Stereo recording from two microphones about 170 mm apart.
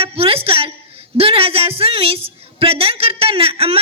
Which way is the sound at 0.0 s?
35° right (ahead or behind).